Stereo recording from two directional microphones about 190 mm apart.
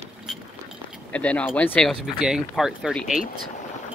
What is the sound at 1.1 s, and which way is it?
Speech, 5° left (ahead or behind).